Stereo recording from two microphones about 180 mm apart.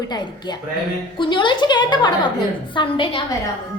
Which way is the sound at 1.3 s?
25° left (ahead or behind).